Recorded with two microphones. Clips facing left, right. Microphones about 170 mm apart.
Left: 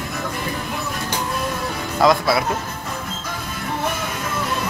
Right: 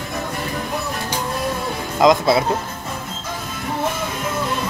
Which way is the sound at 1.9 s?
20° right (ahead or behind).